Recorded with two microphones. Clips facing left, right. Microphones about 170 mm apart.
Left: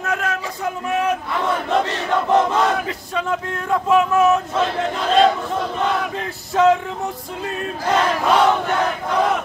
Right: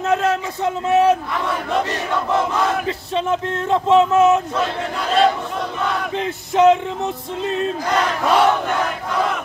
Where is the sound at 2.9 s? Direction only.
25° right (ahead or behind).